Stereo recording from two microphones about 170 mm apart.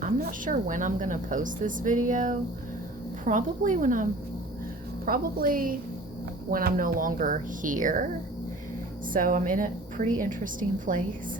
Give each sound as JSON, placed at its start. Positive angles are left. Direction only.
{"t": 0.0, "sound": "a woman's voice", "side_deg": -55}
{"t": 9.1, "sound": "a woman's voice", "side_deg": -55}